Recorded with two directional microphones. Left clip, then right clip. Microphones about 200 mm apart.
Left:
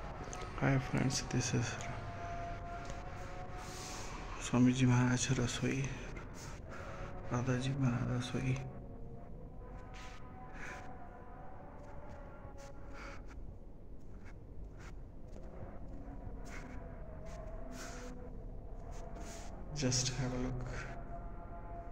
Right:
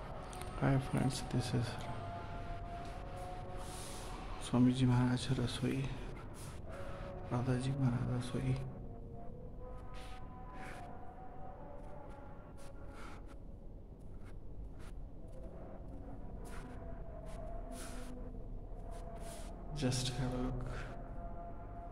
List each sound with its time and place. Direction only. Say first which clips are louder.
0.6 s a man's voice: left 1 dB; centre (ahead or behind)
4.4 s a man's voice: left 1 dB; centre (ahead or behind)
7.2 s a man's voice: left 1 dB; centre (ahead or behind)
19.7 s a man's voice: left 2 dB; centre (ahead or behind)